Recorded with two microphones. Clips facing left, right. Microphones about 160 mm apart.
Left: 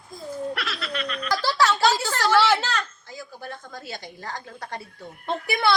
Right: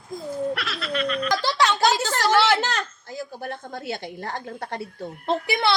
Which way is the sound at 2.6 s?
45° right (ahead or behind).